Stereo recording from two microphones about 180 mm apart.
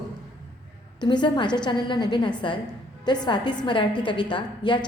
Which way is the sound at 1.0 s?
25° left (ahead or behind).